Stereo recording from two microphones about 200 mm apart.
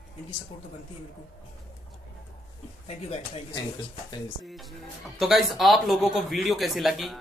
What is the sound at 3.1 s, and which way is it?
Speech, 30° left (ahead or behind).